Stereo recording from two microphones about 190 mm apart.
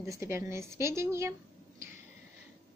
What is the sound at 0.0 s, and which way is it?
A woman's voice, 15° right (ahead or behind).